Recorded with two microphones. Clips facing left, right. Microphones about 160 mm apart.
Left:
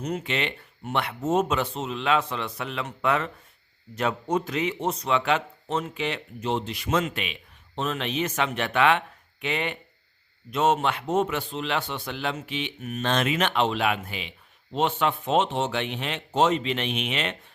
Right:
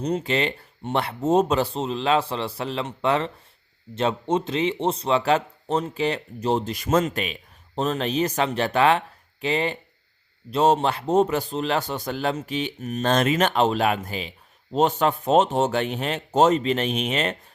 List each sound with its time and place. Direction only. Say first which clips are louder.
0.0 s a man's voice: right 5 dB; 35° right (ahead or behind)